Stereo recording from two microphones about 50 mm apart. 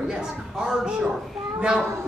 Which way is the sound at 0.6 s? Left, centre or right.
Centre.